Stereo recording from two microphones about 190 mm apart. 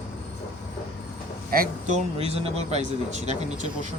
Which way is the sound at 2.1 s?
30° right (ahead or behind).